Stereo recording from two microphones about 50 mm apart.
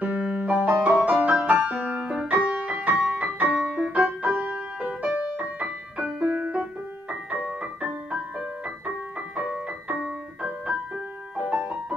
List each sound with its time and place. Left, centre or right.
0.0 s music: right
3.9 s music: right